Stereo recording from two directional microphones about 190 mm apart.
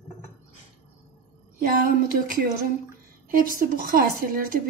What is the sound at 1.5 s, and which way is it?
A woman's voice, 45° right (ahead or behind).